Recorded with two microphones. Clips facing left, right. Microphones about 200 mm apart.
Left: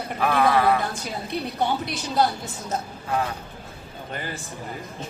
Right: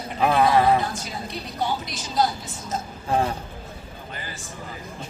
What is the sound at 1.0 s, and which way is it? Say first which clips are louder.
A woman's voice: left 4 dB; 60° left (ahead or behind).